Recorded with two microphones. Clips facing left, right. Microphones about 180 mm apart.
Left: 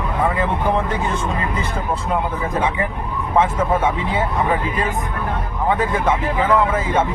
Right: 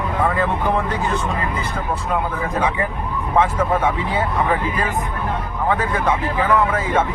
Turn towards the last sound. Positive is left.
turn(degrees=25)  # may be behind; listen again after turning